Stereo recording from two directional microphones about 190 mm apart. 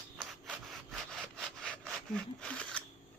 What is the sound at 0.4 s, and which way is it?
Wood, centre (ahead or behind).